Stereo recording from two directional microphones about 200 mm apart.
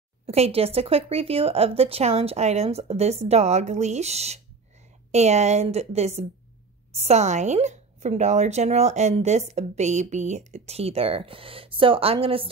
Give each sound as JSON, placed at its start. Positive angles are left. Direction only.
{"t": 0.3, "sound": "speech", "side_deg": -30}